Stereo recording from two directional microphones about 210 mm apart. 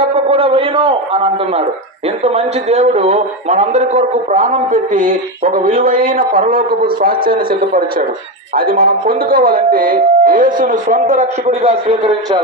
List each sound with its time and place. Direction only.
0.0 s a man's voice: 25° right (ahead or behind)